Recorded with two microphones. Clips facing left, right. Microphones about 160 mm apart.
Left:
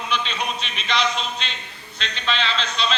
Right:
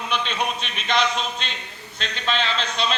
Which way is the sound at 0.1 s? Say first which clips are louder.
Right 1 dB; 55° right (ahead or behind).